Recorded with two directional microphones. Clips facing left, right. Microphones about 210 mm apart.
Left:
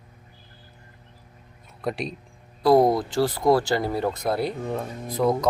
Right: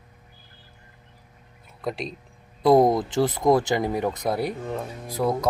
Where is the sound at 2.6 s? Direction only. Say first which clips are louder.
Even; 20° right (ahead or behind).